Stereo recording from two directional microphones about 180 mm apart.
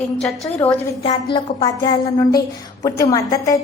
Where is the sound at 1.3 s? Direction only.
25° left (ahead or behind).